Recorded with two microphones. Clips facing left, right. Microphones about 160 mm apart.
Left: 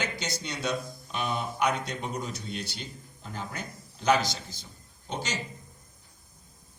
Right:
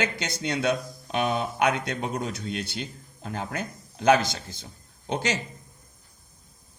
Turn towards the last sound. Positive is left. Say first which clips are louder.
# right 6 dB
turn(degrees=-60)  # may be behind; listen again after turning